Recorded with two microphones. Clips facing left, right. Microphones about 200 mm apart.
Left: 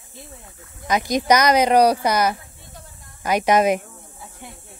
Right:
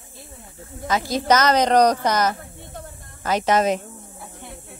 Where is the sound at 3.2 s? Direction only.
10° left (ahead or behind).